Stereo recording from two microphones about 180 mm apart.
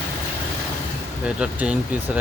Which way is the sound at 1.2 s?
5° right (ahead or behind).